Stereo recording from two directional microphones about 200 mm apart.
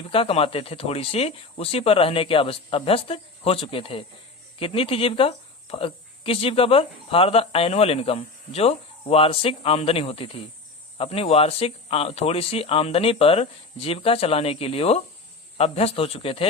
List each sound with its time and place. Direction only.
0.1 s speech: 30° left (ahead or behind)